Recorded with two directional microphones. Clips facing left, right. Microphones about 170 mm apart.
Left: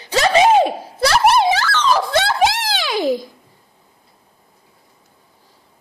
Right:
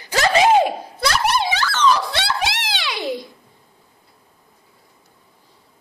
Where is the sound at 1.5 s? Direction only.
45° left (ahead or behind).